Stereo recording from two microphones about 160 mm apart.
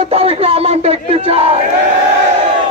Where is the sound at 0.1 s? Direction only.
40° right (ahead or behind).